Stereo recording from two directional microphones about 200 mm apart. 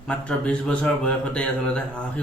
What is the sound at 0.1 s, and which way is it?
A man's voice, 5° left (ahead or behind).